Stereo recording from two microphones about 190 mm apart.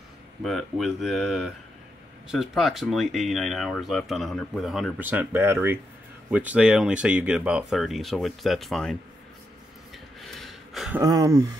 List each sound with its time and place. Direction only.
0.4 s speech: centre (ahead or behind)
10.2 s gasp: centre (ahead or behind)
11.0 s speech: 20° right (ahead or behind)